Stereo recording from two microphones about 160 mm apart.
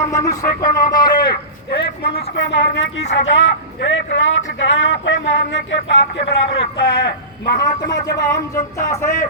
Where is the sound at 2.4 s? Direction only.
90° left.